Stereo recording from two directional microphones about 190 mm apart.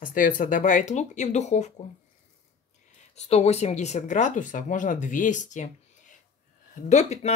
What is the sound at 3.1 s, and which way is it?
Speech, 35° left (ahead or behind).